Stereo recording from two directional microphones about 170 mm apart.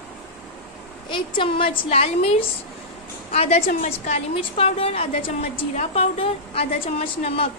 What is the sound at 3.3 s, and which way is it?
A woman's voice, 40° left (ahead or behind).